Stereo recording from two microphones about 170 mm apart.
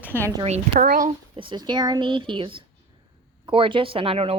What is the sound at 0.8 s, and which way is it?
Speech, 55° right (ahead or behind).